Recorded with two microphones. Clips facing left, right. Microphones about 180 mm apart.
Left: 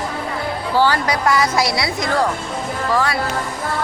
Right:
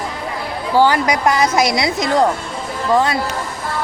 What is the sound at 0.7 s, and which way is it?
A woman's voice, 15° right (ahead or behind).